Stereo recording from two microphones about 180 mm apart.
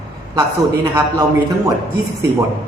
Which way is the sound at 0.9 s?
20° right (ahead or behind).